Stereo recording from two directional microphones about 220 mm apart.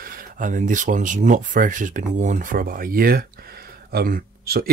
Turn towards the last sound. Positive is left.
turn(degrees=-45)  # may be behind; listen again after turning